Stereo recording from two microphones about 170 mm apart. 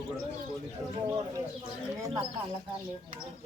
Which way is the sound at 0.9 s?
25° right (ahead or behind).